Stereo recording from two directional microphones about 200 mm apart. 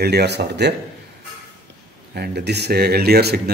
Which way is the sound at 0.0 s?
55° right (ahead or behind).